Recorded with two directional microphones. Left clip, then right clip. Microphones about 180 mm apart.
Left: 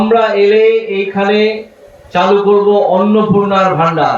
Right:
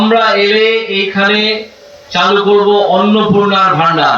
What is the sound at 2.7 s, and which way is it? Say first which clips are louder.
Speech: even; 65° left (ahead or behind).